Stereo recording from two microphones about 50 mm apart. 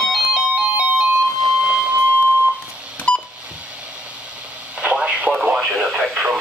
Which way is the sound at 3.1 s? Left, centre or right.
Left.